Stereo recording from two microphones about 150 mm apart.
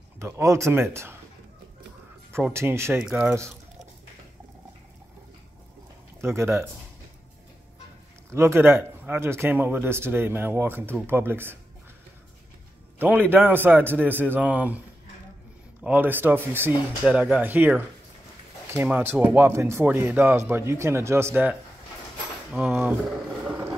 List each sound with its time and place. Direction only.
0.2 s speech: 20° right (ahead or behind)
2.3 s speech: 15° right (ahead or behind)
6.2 s speech: 20° right (ahead or behind)
8.3 s speech: 15° right (ahead or behind)
13.0 s speech: 15° right (ahead or behind)
15.8 s speech: 10° right (ahead or behind)
22.7 s speech: 10° right (ahead or behind)